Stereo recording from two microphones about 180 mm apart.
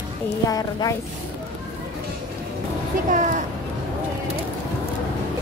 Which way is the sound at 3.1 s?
45° right (ahead or behind).